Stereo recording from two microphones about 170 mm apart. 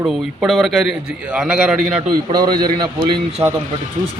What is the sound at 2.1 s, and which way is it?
A man's voice, 25° right (ahead or behind).